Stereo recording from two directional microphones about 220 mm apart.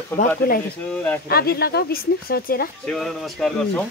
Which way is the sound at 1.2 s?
45° left (ahead or behind).